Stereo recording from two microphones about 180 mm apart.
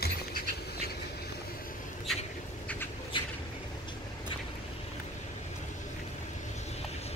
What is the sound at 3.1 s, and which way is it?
Vehicle, 30° left (ahead or behind).